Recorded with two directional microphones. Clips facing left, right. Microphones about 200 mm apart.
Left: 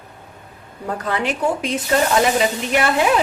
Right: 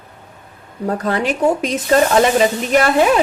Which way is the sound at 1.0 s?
40° right (ahead or behind).